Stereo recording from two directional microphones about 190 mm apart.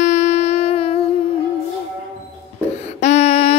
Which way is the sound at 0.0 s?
40° left (ahead or behind).